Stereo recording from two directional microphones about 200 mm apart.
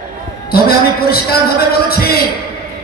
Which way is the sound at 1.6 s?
50° left (ahead or behind).